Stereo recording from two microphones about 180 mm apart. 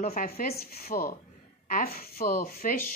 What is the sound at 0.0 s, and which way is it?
A woman's voice, 50° left (ahead or behind).